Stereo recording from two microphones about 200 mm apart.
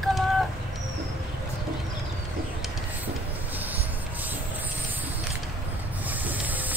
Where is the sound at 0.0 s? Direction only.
Centre (ahead or behind).